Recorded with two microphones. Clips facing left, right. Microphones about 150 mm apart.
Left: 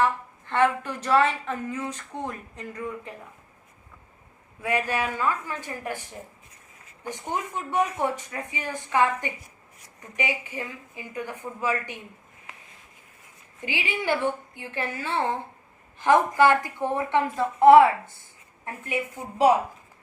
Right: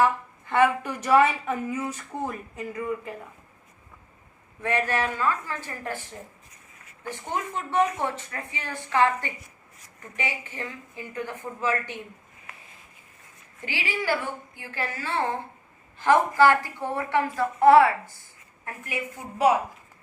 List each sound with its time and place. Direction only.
0.0 s a woman's voice: 10° right (ahead or behind)
4.6 s a woman's voice: 10° left (ahead or behind)
7.0 s a woman's voice: 15° left (ahead or behind)
13.6 s a woman's voice: 15° left (ahead or behind)